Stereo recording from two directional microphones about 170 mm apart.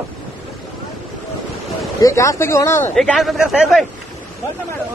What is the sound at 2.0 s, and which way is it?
Speech, 20° left (ahead or behind).